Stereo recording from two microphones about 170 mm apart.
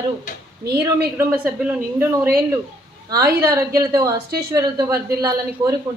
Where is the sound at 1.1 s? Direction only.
10° right (ahead or behind).